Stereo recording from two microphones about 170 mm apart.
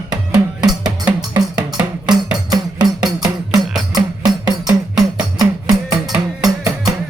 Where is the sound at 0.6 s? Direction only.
25° right (ahead or behind).